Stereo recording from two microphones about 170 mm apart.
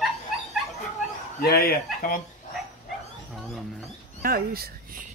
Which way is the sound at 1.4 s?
65° left (ahead or behind).